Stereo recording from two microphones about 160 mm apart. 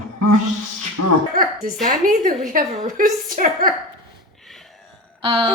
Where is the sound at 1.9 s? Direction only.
60° right (ahead or behind).